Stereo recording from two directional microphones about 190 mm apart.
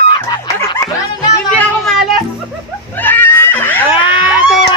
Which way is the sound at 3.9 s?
25° left (ahead or behind).